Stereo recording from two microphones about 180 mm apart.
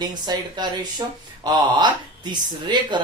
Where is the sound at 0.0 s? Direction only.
20° right (ahead or behind).